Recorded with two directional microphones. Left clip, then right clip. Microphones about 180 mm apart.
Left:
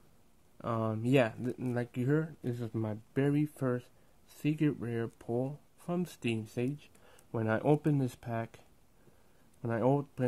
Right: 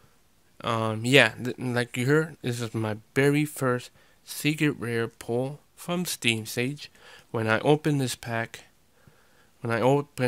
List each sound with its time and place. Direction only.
0.6 s speech: 25° right (ahead or behind)
4.4 s speech: 20° right (ahead or behind)
5.8 s speech: 20° right (ahead or behind)